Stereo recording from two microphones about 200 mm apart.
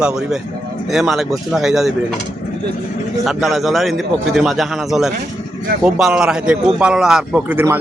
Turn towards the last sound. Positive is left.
turn(degrees=-10)  # may be behind; listen again after turning